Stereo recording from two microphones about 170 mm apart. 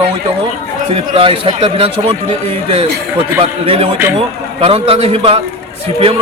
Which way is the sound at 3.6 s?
35° right (ahead or behind).